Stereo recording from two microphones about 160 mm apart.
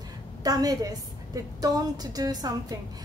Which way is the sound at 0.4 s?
25° right (ahead or behind).